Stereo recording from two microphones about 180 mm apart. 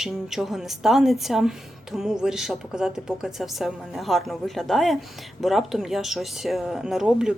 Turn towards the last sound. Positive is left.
turn(degrees=-5)  # may be behind; listen again after turning